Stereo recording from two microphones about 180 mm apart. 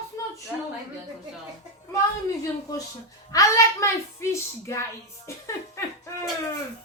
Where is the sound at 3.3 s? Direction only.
15° left (ahead or behind).